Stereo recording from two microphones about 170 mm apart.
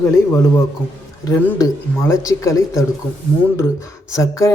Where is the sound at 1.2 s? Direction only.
20° left (ahead or behind).